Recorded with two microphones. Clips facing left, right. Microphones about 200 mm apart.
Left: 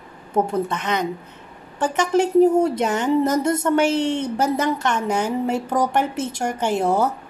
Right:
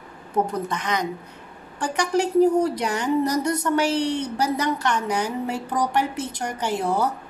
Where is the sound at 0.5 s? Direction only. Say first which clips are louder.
Left 4 dB; 25° left (ahead or behind).